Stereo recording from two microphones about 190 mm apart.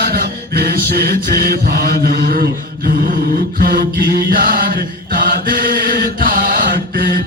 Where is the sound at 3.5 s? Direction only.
50° right (ahead or behind).